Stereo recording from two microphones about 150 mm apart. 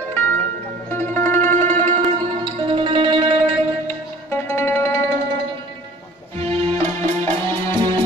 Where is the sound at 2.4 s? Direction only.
35° right (ahead or behind).